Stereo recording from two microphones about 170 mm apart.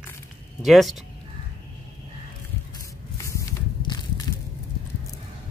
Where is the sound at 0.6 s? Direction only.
Centre (ahead or behind).